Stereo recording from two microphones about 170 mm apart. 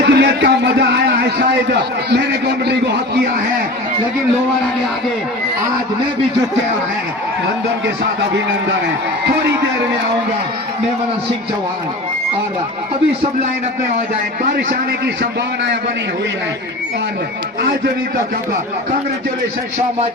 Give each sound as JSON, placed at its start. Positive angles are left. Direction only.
{"t": 0.0, "sound": "a sound", "side_deg": -80}
{"t": 2.0, "sound": "a man's voice", "side_deg": -80}
{"t": 14.5, "sound": "a man's voice", "side_deg": -65}